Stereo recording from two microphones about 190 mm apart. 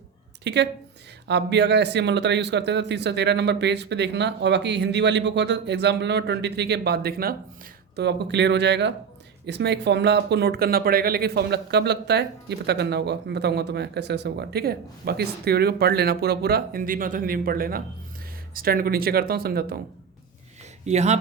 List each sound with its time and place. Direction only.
0.4 s speech: 65° right (ahead or behind)
7.9 s speech: 65° right (ahead or behind)
20.8 s speech: 35° right (ahead or behind)